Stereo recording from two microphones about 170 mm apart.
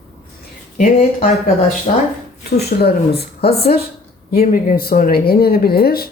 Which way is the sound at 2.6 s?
70° left (ahead or behind).